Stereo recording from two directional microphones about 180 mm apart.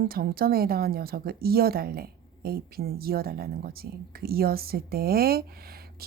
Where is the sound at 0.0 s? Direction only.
55° right (ahead or behind).